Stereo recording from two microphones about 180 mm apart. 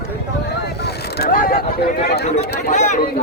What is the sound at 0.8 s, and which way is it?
Boat, 65° left (ahead or behind).